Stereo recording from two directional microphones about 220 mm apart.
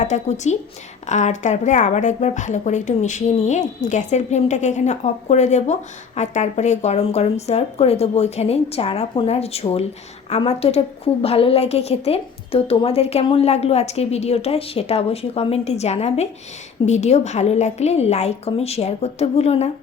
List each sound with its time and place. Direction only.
0.0 s a woman's voice: 30° left (ahead or behind)